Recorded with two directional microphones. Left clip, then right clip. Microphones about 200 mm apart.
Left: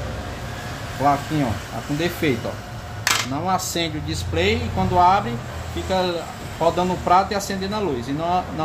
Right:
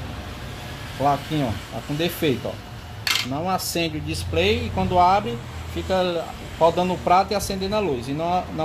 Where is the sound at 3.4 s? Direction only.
30° right (ahead or behind).